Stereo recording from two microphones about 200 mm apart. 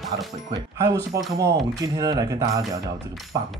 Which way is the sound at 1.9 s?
20° right (ahead or behind).